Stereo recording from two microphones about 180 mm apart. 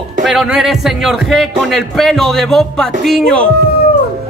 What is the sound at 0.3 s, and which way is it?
Speech, centre (ahead or behind).